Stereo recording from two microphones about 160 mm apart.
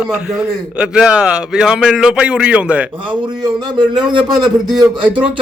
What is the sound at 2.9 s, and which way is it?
Speech, 30° right (ahead or behind).